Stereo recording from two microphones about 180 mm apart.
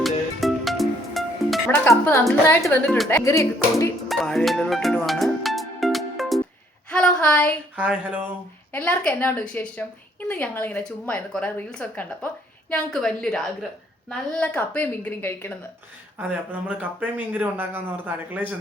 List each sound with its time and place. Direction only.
0.0 s music: centre (ahead or behind)
2.5 s a woman's voice: 10° left (ahead or behind)
4.1 s music: centre (ahead or behind)
6.9 s a woman's voice: 5° left (ahead or behind)
7.8 s speech: 10° right (ahead or behind)
8.7 s a woman's voice: 10° left (ahead or behind)
16.1 s speech: 10° right (ahead or behind)